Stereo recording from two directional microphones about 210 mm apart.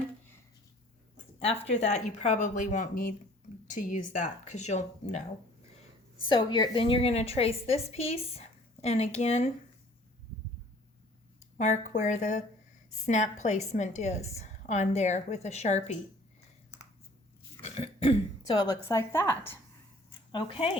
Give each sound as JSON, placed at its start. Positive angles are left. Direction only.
{"t": 1.1, "sound": "a woman's voice", "side_deg": 30}
{"t": 6.2, "sound": "a woman's voice", "side_deg": 20}
{"t": 11.5, "sound": "a woman's voice", "side_deg": 35}
{"t": 17.6, "sound": "speech", "side_deg": 30}
{"t": 20.3, "sound": "a woman's voice", "side_deg": 25}